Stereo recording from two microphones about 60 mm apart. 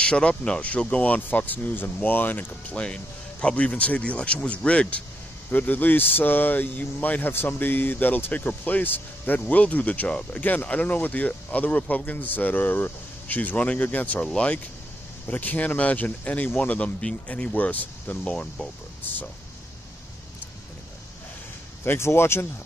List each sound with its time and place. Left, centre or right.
0.0 s speech: centre
2.8 s speech: centre
5.5 s speech: left
14.2 s speech: centre
15.2 s speech: left
19.1 s speech: left
21.8 s speech: left